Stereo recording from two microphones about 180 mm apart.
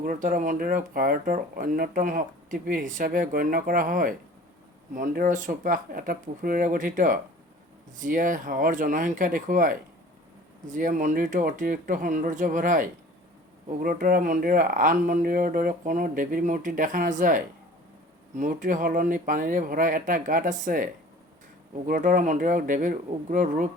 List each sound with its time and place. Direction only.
0.0 s speech: 50° right (ahead or behind)
13.8 s speech: 50° right (ahead or behind)